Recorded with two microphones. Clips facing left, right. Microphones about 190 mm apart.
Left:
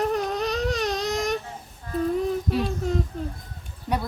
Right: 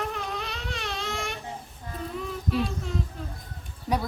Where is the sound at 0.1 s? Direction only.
40° left (ahead or behind).